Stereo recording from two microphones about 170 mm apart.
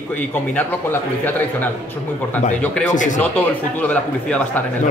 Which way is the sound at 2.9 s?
50° left (ahead or behind).